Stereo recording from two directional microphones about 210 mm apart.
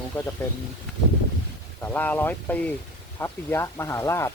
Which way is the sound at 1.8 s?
10° left (ahead or behind).